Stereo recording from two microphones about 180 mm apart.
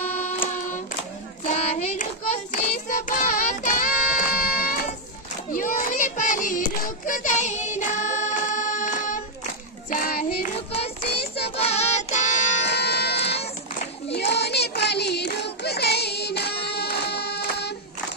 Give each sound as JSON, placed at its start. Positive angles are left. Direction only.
{"t": 1.4, "sound": "child singing", "side_deg": 45}
{"t": 10.7, "sound": "child singing", "side_deg": 35}
{"t": 11.1, "sound": "child singing", "side_deg": 65}
{"t": 11.4, "sound": "music", "side_deg": 35}
{"t": 12.6, "sound": "buzzer", "side_deg": 65}
{"t": 14.0, "sound": "child singing", "side_deg": 70}